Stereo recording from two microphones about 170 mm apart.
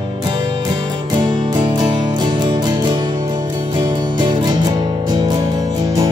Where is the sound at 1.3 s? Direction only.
25° right (ahead or behind).